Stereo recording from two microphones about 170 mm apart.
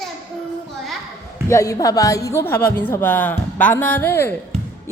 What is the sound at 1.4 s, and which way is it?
A woman's voice, 20° left (ahead or behind).